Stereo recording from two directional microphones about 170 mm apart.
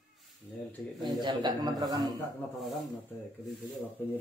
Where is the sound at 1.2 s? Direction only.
25° right (ahead or behind).